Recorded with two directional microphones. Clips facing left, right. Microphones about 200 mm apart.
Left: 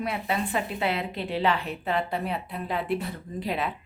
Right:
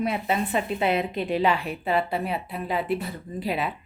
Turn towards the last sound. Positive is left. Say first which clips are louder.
# right 2 dB
turn(degrees=-5)  # may be behind; listen again after turning